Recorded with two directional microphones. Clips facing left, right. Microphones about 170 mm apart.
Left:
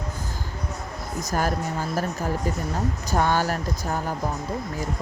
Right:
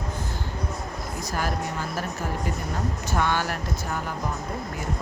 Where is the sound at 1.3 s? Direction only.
45° left (ahead or behind).